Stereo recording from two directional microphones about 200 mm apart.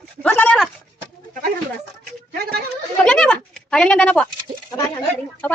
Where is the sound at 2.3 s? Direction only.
50° right (ahead or behind).